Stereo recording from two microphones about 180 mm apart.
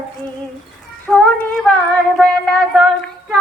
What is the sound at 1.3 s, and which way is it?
Speech, 5° left (ahead or behind).